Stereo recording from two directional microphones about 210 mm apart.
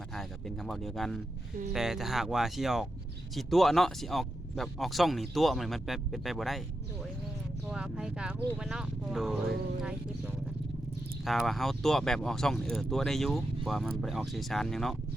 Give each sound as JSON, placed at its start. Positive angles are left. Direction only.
{"t": 0.1, "sound": "speech", "side_deg": 0}
{"t": 7.7, "sound": "speech", "side_deg": -5}
{"t": 11.3, "sound": "speech", "side_deg": 0}